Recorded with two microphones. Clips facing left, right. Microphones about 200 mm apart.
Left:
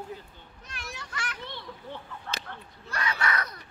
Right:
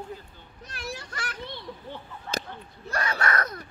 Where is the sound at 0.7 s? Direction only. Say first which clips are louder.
Right 5 dB; 35° right (ahead or behind).